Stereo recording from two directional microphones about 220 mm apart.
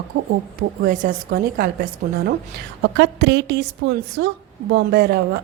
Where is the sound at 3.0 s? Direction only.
50° right (ahead or behind).